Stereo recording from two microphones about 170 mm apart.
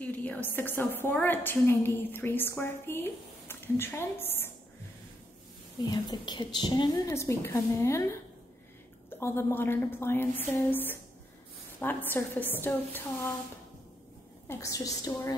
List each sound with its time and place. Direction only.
0.0 s a woman's voice: 10° left (ahead or behind)
5.9 s a woman's voice: 25° left (ahead or behind)
9.2 s a woman's voice: 15° left (ahead or behind)
14.5 s a woman's voice: 20° left (ahead or behind)